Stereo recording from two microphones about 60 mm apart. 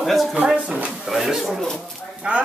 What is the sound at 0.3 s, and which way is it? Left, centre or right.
Speech, centre.